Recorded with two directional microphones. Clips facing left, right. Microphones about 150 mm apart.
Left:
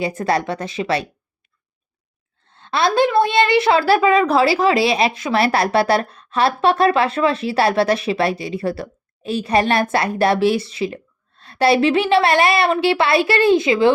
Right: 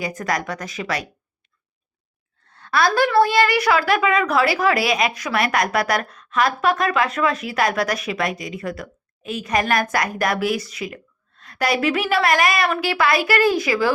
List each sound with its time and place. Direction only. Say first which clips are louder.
0.0 s a woman's voice: left 5 dB; 30° left (ahead or behind)
2.5 s a woman's voice: left 1 dB; 25° left (ahead or behind)